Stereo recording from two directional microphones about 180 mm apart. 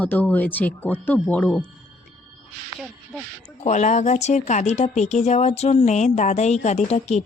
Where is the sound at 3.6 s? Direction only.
40° left (ahead or behind).